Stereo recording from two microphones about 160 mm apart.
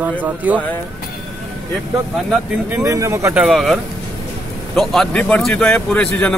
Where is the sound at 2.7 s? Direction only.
20° right (ahead or behind).